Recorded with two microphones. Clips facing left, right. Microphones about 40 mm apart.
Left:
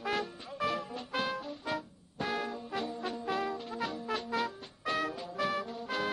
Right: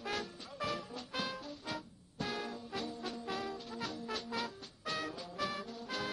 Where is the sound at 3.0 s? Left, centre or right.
Centre.